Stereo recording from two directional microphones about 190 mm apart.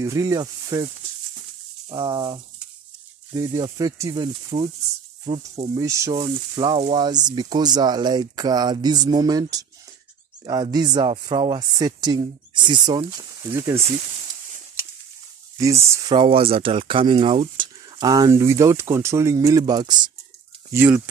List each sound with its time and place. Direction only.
0.0 s speech: 15° right (ahead or behind)
1.9 s speech: 25° right (ahead or behind)
5.8 s speech: 15° right (ahead or behind)
15.5 s speech: 20° right (ahead or behind)
16.2 s speech: 30° right (ahead or behind)
20.7 s speech: 10° right (ahead or behind)